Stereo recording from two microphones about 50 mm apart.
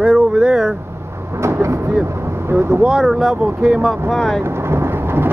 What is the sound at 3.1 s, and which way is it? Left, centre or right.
Speech, centre.